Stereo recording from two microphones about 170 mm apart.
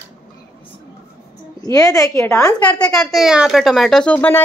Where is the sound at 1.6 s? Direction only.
20° left (ahead or behind).